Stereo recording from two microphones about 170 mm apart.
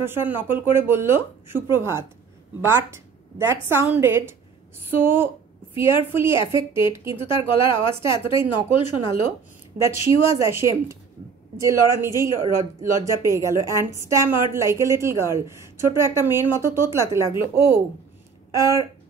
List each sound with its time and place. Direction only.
0.0 s speech: 15° right (ahead or behind)
8.7 s speech: 35° left (ahead or behind)
10.4 s speech: 15° right (ahead or behind)